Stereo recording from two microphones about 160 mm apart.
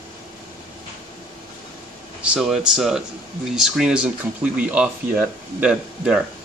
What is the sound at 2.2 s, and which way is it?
Speech, 5° right (ahead or behind).